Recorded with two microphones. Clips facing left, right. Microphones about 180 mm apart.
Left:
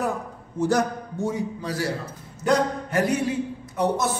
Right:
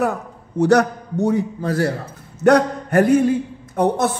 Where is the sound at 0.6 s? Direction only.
70° right (ahead or behind).